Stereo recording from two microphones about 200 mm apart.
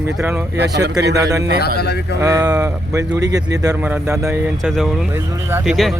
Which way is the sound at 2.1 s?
15° right (ahead or behind).